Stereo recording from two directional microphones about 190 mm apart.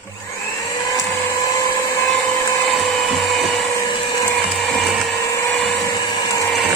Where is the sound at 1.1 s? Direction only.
15° left (ahead or behind).